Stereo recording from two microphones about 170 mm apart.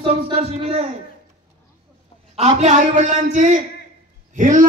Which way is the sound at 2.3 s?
40° right (ahead or behind).